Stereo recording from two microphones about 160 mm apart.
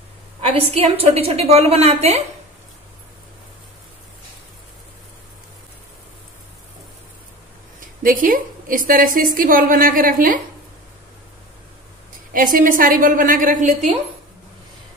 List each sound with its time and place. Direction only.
0.5 s a woman's voice: 40° right (ahead or behind)
7.8 s a woman's voice: 60° right (ahead or behind)
12.3 s a woman's voice: 60° right (ahead or behind)